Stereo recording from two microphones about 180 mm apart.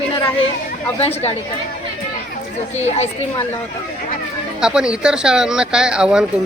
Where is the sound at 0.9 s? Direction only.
35° left (ahead or behind).